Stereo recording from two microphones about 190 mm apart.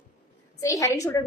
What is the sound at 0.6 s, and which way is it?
Speech, 15° left (ahead or behind).